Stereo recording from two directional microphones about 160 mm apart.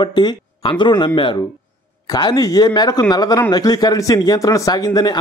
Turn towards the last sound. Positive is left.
turn(degrees=25)  # may be behind; listen again after turning